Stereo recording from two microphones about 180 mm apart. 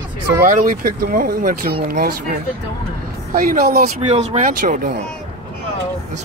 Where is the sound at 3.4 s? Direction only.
50° right (ahead or behind).